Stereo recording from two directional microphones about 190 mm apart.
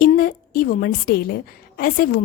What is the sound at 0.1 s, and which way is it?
A woman's voice, 50° left (ahead or behind).